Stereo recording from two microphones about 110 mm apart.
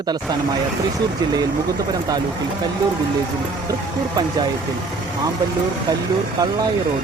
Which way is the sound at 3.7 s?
40° right (ahead or behind).